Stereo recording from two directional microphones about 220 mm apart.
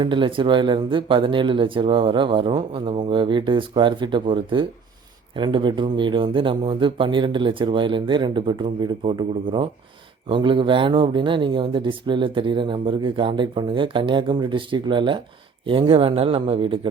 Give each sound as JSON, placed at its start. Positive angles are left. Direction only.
{"t": 0.0, "sound": "speech", "side_deg": -20}